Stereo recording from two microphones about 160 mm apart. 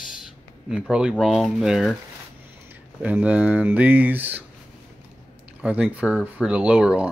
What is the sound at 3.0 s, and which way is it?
Speech, 10° right (ahead or behind).